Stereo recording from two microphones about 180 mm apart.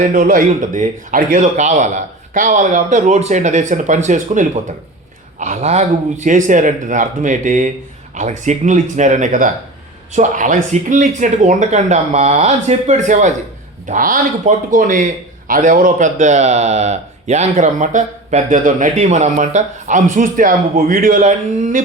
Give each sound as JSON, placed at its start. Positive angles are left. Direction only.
{"t": 0.1, "sound": "a man's voice", "side_deg": -50}